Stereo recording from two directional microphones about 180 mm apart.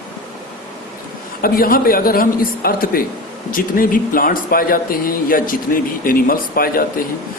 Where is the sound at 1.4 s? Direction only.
55° left (ahead or behind).